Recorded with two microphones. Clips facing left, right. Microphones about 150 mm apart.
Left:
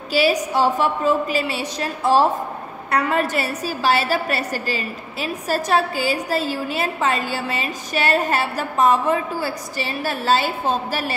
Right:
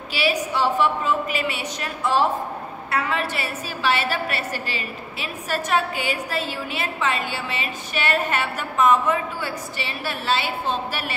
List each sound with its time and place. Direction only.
0.1 s a woman's voice: 40° left (ahead or behind)